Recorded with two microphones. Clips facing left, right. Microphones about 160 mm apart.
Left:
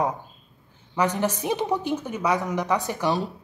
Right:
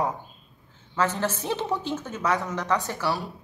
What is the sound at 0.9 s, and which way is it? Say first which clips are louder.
Speech: left 2 dB; 15° left (ahead or behind).